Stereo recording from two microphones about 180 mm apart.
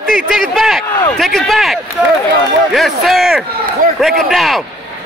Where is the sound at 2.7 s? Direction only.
Centre (ahead or behind).